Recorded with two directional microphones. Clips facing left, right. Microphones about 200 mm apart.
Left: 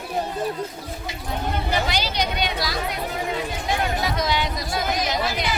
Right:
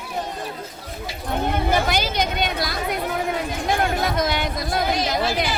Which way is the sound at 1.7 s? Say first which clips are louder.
Right 3 dB; 50° right (ahead or behind).